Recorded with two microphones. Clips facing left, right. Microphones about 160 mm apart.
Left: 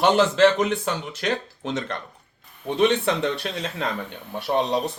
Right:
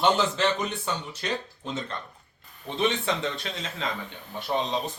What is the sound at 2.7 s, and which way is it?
Speech, 65° left (ahead or behind).